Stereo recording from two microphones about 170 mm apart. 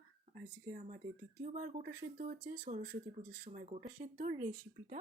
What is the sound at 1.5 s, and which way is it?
Speech, 45° right (ahead or behind).